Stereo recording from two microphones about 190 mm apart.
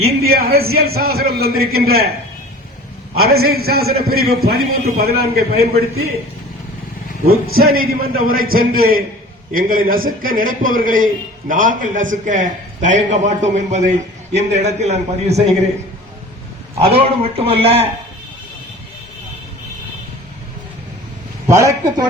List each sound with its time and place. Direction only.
0.3 s a man's voice: 55° right (ahead or behind)
3.2 s a man's voice: 55° right (ahead or behind)
7.4 s a man's voice: 90° right
7.7 s a man's voice: 50° right (ahead or behind); by 15.4 s 35° right (ahead or behind)
16.8 s a man's voice: 30° right (ahead or behind)
21.4 s a man's voice: 15° right (ahead or behind)